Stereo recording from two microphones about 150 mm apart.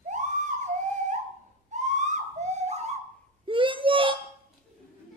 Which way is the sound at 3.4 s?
35° right (ahead or behind).